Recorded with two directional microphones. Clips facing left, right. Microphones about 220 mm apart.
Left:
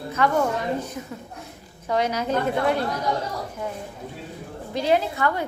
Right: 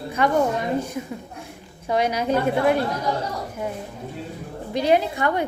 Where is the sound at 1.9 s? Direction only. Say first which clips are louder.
Right 2 dB; 10° right (ahead or behind).